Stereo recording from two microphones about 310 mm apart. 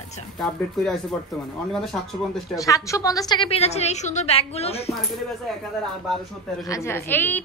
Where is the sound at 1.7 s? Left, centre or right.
Centre.